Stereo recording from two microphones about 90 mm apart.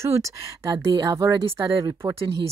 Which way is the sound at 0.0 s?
30° right (ahead or behind).